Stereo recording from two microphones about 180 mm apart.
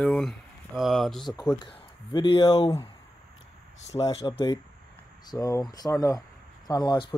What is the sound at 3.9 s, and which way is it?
Speech, 30° left (ahead or behind).